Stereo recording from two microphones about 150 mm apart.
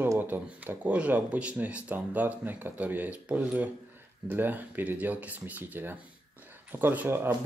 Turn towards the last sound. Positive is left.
turn(degrees=-15)  # may be behind; listen again after turning